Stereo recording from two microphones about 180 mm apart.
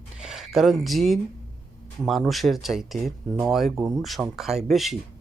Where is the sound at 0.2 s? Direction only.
5° right (ahead or behind).